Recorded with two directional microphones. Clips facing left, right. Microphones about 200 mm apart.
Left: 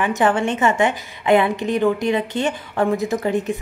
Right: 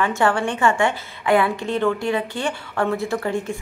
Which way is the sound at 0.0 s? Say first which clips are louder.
Left 2 dB; 20° left (ahead or behind).